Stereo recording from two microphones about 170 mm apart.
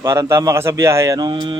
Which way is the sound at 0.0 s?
15° right (ahead or behind).